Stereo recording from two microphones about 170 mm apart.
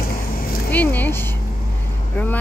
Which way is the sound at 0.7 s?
10° left (ahead or behind).